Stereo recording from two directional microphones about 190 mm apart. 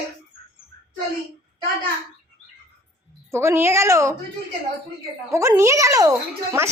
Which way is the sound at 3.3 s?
15° right (ahead or behind).